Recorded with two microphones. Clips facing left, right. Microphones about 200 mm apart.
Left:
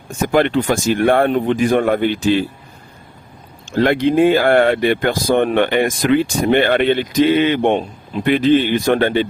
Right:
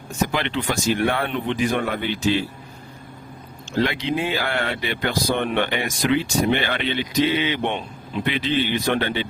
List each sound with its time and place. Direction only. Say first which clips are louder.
0.2 s speech: left 9 dB; 50° left (ahead or behind)
3.7 s speech: left 8 dB; 50° left (ahead or behind)